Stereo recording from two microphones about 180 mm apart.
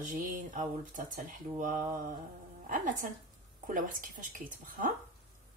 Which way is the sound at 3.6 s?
50° right (ahead or behind).